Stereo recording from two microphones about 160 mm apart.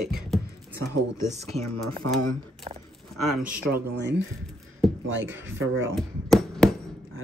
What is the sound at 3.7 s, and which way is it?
Speech, 90° right.